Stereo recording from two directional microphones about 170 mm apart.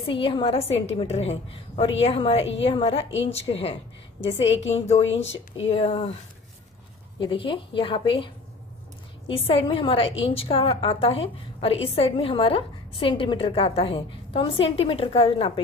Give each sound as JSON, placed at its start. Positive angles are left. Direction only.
{"t": 0.0, "sound": "a woman's voice", "side_deg": 30}
{"t": 7.2, "sound": "a woman's voice", "side_deg": 30}
{"t": 9.3, "sound": "a woman's voice", "side_deg": 35}